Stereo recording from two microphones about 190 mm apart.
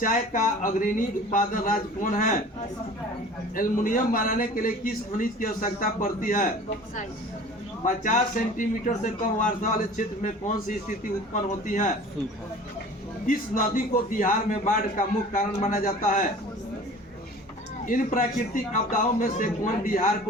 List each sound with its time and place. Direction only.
0.0 s a man's voice: 45° left (ahead or behind)
3.5 s a man's voice: 45° left (ahead or behind)
7.9 s a man's voice: 45° left (ahead or behind)
13.2 s a man's voice: 45° left (ahead or behind)
17.8 s a man's voice: 45° left (ahead or behind)